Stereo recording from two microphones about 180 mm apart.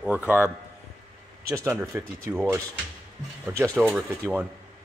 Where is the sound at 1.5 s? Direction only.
15° right (ahead or behind).